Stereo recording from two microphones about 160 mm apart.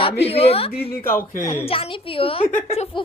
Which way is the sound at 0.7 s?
75° left (ahead or behind).